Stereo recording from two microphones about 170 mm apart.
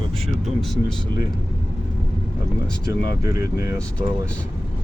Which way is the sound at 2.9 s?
15° right (ahead or behind).